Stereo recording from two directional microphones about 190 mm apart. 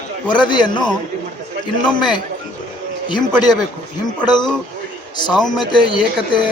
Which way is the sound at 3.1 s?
25° left (ahead or behind).